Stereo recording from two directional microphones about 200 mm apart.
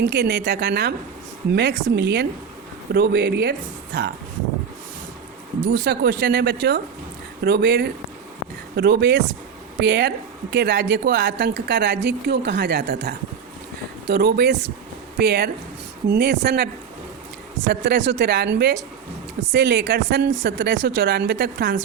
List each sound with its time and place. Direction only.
0.0 s a woman's voice: 55° right (ahead or behind)
5.7 s a woman's voice: 55° right (ahead or behind)
17.7 s a woman's voice: 60° right (ahead or behind)